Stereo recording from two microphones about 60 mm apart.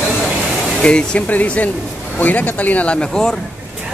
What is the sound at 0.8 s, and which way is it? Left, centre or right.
Speech, centre.